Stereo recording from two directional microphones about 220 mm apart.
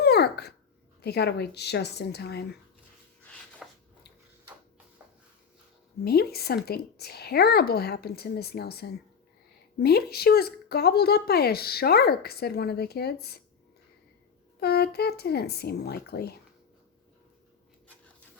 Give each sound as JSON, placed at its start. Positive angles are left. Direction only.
{"t": 0.0, "sound": "dog", "side_deg": 45}
{"t": 1.0, "sound": "speech", "side_deg": 50}
{"t": 3.6, "sound": "a sound", "side_deg": 0}
{"t": 6.1, "sound": "speech", "side_deg": 45}
{"t": 14.6, "sound": "speech", "side_deg": 45}